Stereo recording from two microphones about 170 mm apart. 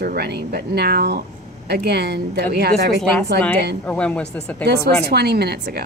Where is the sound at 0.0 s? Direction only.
65° right (ahead or behind).